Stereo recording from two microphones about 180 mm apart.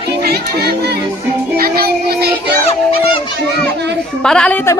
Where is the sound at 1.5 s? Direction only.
55° right (ahead or behind).